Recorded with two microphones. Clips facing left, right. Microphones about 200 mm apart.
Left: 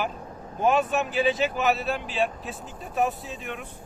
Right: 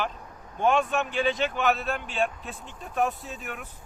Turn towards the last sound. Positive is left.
turn(degrees=-5)  # may be behind; listen again after turning